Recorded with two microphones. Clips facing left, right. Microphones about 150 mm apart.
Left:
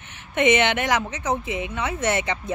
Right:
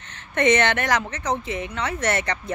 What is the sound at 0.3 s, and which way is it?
Speech, 20° left (ahead or behind).